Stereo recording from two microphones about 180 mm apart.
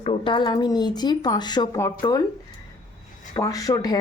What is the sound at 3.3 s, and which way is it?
Speech, 20° left (ahead or behind).